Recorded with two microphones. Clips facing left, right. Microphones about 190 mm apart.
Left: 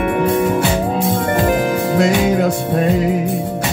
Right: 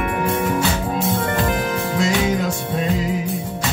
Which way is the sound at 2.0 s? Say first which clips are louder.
Left 5 dB; 55° left (ahead or behind).